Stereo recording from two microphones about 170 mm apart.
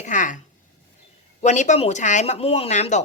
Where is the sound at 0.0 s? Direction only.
50° left (ahead or behind).